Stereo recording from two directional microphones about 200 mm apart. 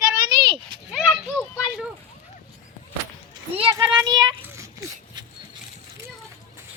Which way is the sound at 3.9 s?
20° right (ahead or behind).